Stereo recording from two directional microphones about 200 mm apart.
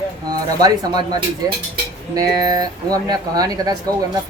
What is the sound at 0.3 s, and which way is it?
Speech, 20° right (ahead or behind).